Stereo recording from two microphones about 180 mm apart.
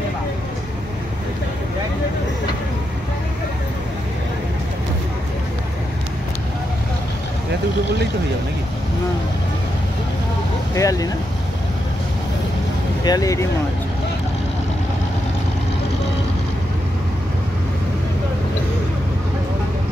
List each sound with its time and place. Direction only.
10.7 s speech: 20° left (ahead or behind)
13.0 s speech: 20° left (ahead or behind)